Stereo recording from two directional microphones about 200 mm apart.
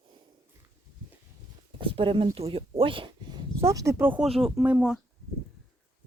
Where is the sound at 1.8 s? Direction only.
25° right (ahead or behind); by 5.0 s 5° right (ahead or behind).